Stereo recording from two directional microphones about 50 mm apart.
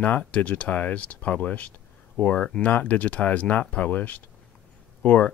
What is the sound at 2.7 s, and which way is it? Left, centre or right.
Speech, left.